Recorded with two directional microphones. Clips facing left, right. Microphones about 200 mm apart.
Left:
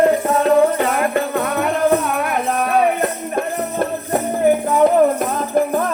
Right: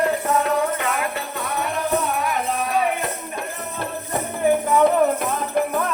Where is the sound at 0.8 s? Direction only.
45° left (ahead or behind).